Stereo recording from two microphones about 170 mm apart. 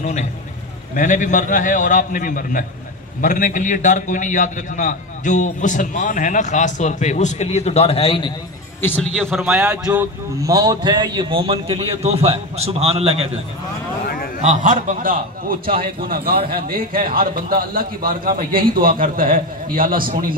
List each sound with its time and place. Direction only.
0.0 s a man's voice: 45° left (ahead or behind)
8.8 s a man's voice: 5° left (ahead or behind)
9.8 s a man's voice: 20° right (ahead or behind); by 13.3 s 35° right (ahead or behind)
14.4 s a man's voice: 45° right (ahead or behind)